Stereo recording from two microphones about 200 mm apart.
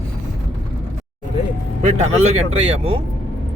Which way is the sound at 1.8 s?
35° right (ahead or behind).